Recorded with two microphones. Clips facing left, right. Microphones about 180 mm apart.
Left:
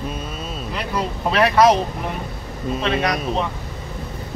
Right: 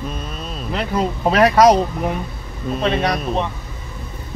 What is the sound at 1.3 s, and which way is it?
Speech, 40° right (ahead or behind).